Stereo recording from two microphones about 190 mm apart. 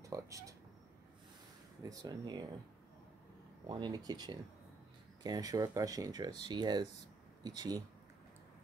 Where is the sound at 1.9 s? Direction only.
20° right (ahead or behind).